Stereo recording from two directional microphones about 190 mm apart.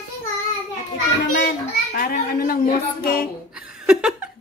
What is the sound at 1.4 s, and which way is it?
A child's voice, 50° left (ahead or behind).